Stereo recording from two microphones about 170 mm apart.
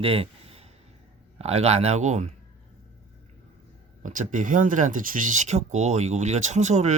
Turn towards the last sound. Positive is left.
turn(degrees=-45)  # may be behind; listen again after turning